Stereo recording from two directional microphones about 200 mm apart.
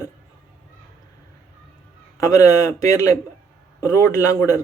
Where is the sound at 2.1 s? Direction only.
15° left (ahead or behind).